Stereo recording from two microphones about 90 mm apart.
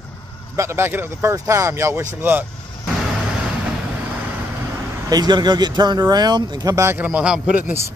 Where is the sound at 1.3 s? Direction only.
35° right (ahead or behind).